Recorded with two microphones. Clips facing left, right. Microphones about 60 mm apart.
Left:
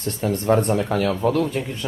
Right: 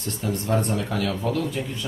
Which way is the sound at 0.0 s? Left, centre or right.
Left.